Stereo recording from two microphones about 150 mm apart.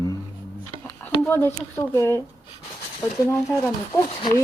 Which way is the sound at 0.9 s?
15° left (ahead or behind).